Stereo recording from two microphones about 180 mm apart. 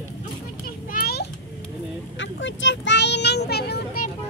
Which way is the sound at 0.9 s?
55° left (ahead or behind).